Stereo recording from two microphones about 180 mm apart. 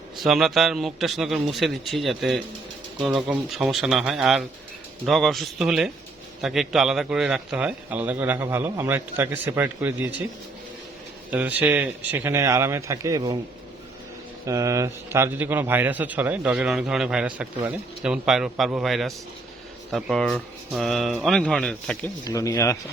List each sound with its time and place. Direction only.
0.2 s a man's voice: centre (ahead or behind)
11.3 s a man's voice: 10° right (ahead or behind)
14.4 s a man's voice: 15° right (ahead or behind); by 22.1 s 5° left (ahead or behind)
22.2 s speech: 20° left (ahead or behind)